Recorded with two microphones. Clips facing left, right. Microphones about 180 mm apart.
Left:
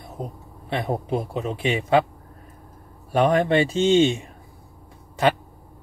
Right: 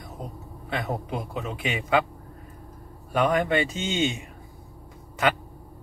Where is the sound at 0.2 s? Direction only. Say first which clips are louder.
Left 6 dB; 30° left (ahead or behind).